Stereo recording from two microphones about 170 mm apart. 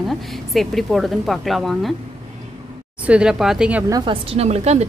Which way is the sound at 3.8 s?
20° right (ahead or behind).